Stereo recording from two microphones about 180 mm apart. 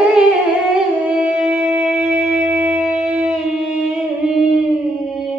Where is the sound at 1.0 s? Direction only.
5° right (ahead or behind).